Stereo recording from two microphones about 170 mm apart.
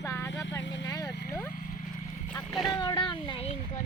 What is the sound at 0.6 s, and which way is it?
Vehicle, 90° left.